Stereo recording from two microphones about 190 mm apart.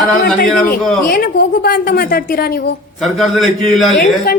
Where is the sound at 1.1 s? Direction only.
55° left (ahead or behind).